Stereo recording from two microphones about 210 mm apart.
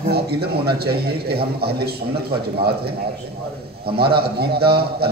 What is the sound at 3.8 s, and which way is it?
A man's voice, 50° right (ahead or behind).